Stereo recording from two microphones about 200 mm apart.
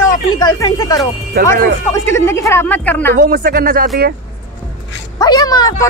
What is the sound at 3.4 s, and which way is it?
Speech, 45° right (ahead or behind).